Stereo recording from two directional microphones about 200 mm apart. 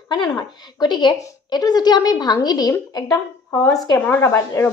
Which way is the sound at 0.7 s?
20° left (ahead or behind).